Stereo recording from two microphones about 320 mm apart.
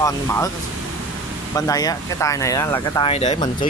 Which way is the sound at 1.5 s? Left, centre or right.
Centre.